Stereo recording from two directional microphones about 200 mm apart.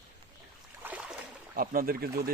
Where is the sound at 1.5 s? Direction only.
45° right (ahead or behind).